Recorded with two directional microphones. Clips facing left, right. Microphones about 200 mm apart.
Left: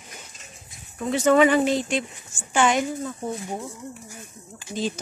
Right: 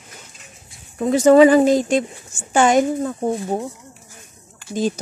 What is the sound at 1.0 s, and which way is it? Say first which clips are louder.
Speech: right 7 dB; 40° right (ahead or behind).